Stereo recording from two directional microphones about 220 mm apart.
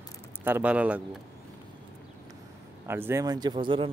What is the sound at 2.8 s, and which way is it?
Speech, 10° right (ahead or behind).